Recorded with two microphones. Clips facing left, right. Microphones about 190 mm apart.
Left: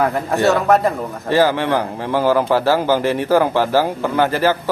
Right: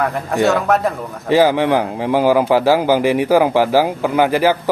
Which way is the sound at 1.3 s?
15° right (ahead or behind).